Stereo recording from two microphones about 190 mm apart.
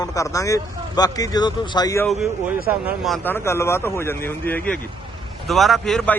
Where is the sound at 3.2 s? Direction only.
10° left (ahead or behind).